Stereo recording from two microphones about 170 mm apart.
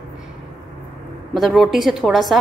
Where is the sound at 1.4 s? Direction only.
Centre (ahead or behind).